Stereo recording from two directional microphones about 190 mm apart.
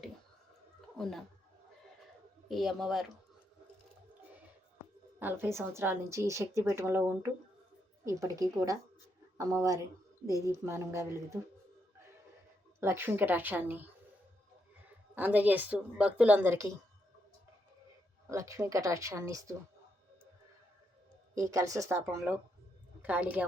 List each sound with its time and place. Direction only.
2.5 s a woman's voice: centre (ahead or behind)
5.2 s a woman's voice: 15° right (ahead or behind)
12.8 s a woman's voice: 10° right (ahead or behind)
15.1 s a woman's voice: 10° right (ahead or behind)
18.3 s a woman's voice: 15° right (ahead or behind)
21.3 s a woman's voice: 15° right (ahead or behind)